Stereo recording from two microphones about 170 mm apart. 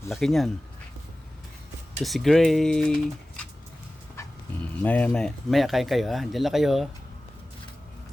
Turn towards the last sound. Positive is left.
turn(degrees=0)  # may be behind; listen again after turning